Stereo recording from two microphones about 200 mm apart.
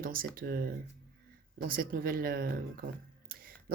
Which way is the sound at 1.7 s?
45° right (ahead or behind).